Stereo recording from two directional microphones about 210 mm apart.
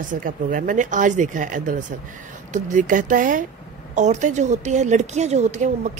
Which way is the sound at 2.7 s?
40° right (ahead or behind).